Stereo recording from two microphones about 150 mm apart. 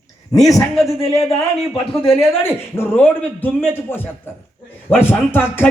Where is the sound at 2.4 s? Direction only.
15° left (ahead or behind).